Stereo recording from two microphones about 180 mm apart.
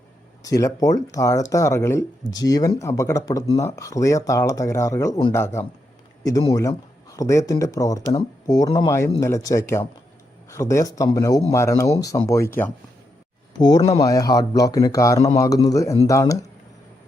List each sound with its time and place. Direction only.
0.4 s speech: 20° left (ahead or behind)
13.6 s speech: 20° left (ahead or behind)